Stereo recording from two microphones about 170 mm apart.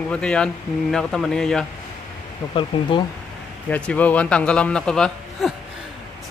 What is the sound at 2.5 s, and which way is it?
Speech, 30° left (ahead or behind).